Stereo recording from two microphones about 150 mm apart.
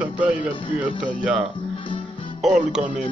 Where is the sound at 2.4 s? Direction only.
Centre (ahead or behind).